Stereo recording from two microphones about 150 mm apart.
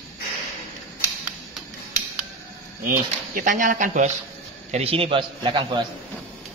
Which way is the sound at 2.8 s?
65° right (ahead or behind).